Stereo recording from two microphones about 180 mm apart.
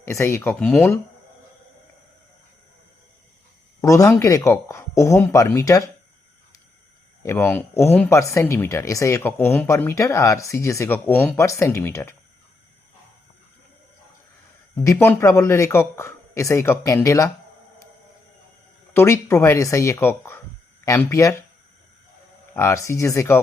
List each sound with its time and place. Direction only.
0.1 s speech: 15° left (ahead or behind)
3.8 s speech: 15° left (ahead or behind)
7.2 s speech: 15° left (ahead or behind)
14.8 s speech: 15° left (ahead or behind)
18.9 s speech: 15° left (ahead or behind)
22.5 s speech: 15° left (ahead or behind)